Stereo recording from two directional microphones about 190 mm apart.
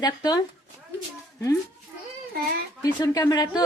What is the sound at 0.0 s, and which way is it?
Speech, 20° left (ahead or behind).